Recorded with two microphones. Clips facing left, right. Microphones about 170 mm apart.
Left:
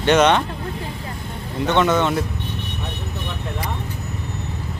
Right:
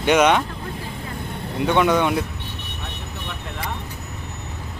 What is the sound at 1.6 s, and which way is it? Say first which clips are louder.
Speech: even; 10° right (ahead or behind).